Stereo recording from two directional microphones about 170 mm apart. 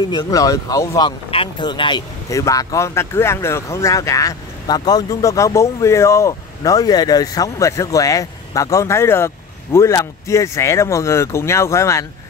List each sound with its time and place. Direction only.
0.1 s speech: 25° left (ahead or behind)